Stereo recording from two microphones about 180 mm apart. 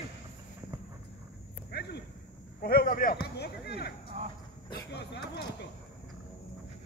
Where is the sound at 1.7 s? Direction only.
65° left (ahead or behind).